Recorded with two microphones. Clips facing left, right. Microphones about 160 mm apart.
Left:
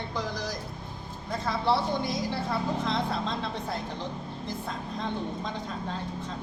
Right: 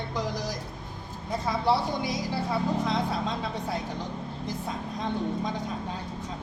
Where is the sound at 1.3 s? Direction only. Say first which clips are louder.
Right 1 dB; 10° right (ahead or behind).